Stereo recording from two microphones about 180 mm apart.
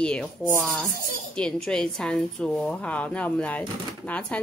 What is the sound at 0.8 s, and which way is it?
Speech, 50° right (ahead or behind).